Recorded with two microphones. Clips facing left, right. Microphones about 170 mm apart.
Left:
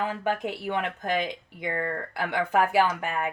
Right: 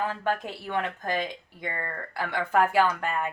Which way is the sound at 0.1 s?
15° left (ahead or behind).